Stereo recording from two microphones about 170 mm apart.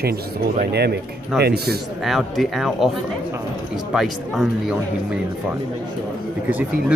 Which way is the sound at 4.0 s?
5° right (ahead or behind).